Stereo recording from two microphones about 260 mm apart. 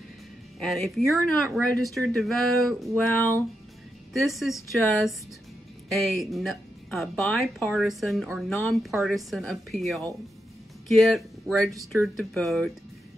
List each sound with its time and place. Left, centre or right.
0.6 s speech: centre
11.7 s speech: centre
12.2 s speech: centre